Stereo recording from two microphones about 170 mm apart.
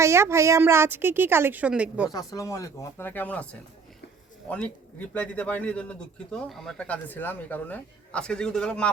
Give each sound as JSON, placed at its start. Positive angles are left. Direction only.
{"t": 0.0, "sound": "a woman's voice", "side_deg": -15}
{"t": 2.1, "sound": "speech", "side_deg": 20}